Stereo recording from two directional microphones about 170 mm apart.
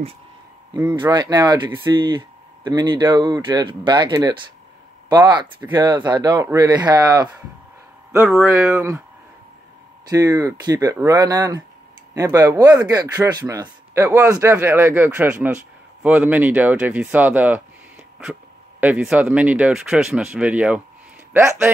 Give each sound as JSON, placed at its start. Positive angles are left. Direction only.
{"t": 0.7, "sound": "speech", "side_deg": -25}
{"t": 8.7, "sound": "speech", "side_deg": -15}
{"t": 10.0, "sound": "speech", "side_deg": -20}